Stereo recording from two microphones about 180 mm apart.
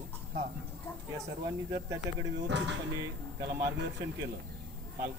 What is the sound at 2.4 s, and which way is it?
Speech, 75° right (ahead or behind).